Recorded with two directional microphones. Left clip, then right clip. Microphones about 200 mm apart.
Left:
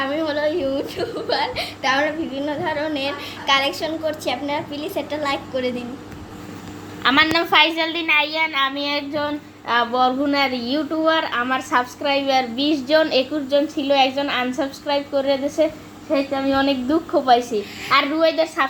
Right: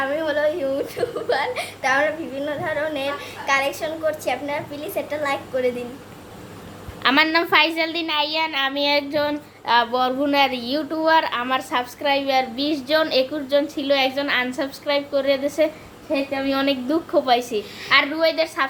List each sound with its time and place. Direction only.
0.0 s a woman's voice: 10° right (ahead or behind)
7.0 s a woman's voice: 10° right (ahead or behind)
18.1 s a woman's voice: 10° left (ahead or behind)